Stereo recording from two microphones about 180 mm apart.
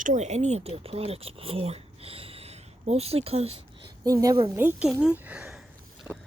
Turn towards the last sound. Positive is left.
turn(degrees=-5)  # may be behind; listen again after turning